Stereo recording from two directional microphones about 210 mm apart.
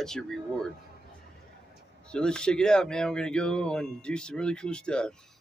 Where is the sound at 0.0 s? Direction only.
Centre (ahead or behind).